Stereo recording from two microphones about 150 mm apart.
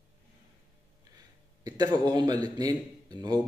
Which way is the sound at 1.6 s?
25° right (ahead or behind).